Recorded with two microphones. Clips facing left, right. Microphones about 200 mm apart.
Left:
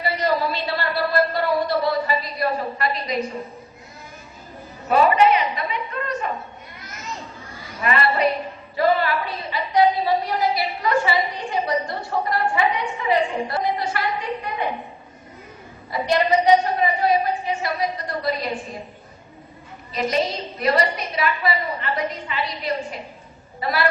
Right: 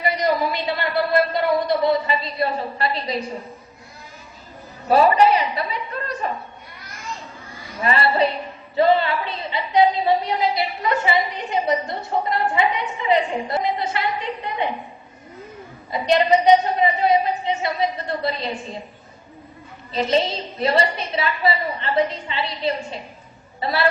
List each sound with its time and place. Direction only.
0.0 s a woman's voice: 15° right (ahead or behind)
4.9 s a woman's voice: 35° right (ahead or behind)
7.8 s a woman's voice: 30° right (ahead or behind)
15.9 s a woman's voice: 20° right (ahead or behind)
19.9 s a woman's voice: 30° right (ahead or behind)